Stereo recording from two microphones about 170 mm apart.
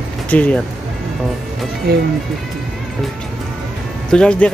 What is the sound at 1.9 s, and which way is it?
Speech, 65° right (ahead or behind).